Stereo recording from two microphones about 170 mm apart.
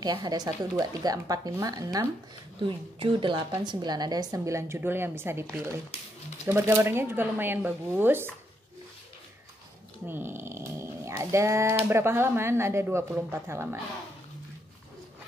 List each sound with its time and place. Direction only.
0.0 s speech: 25° right (ahead or behind)
10.0 s speech: 10° right (ahead or behind)